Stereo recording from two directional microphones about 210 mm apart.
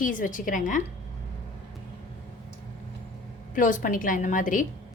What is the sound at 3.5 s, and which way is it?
A woman's voice, 40° left (ahead or behind).